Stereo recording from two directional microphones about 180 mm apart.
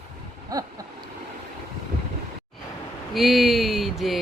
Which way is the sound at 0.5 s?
20° right (ahead or behind).